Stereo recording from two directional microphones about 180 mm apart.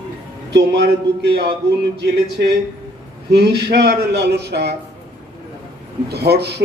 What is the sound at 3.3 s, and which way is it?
A man's voice, 65° right (ahead or behind).